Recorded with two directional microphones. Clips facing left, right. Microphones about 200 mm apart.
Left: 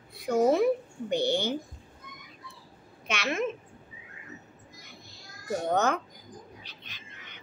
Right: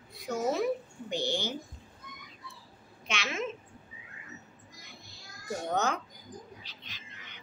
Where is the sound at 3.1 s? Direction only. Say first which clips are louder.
Left 5 dB; 55° left (ahead or behind).